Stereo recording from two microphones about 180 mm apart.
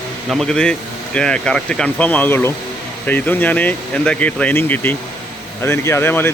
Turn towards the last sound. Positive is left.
turn(degrees=15)  # may be behind; listen again after turning